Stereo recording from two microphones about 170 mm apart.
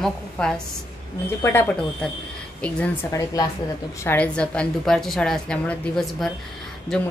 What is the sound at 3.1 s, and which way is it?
A woman's voice, 20° left (ahead or behind).